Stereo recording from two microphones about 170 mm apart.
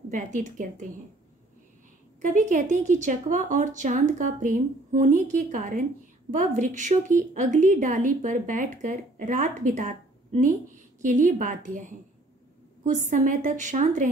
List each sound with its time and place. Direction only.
0.1 s a woman's voice: 45° right (ahead or behind)
2.2 s a woman's voice: 50° right (ahead or behind)